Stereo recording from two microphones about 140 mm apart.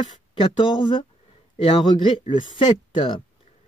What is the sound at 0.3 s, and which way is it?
Speech, 35° left (ahead or behind).